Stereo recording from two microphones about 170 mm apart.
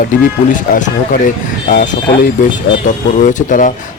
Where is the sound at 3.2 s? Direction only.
50° left (ahead or behind).